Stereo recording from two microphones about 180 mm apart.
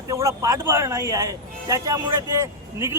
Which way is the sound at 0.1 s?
15° right (ahead or behind).